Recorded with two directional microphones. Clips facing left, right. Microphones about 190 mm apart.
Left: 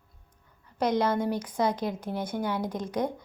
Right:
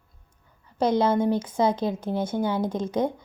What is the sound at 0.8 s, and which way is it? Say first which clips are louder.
A woman's voice: right 4 dB; 25° right (ahead or behind).